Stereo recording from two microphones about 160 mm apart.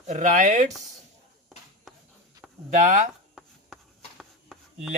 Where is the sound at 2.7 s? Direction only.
50° right (ahead or behind).